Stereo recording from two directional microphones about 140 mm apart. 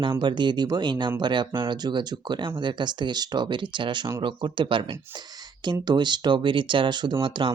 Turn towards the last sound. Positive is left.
turn(degrees=-35)  # may be behind; listen again after turning